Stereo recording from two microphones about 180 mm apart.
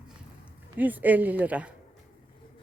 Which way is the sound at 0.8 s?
10° right (ahead or behind).